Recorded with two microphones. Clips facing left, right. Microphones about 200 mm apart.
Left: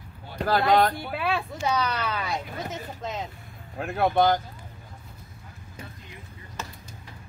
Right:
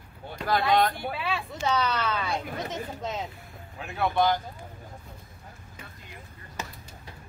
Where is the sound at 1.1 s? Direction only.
55° left (ahead or behind).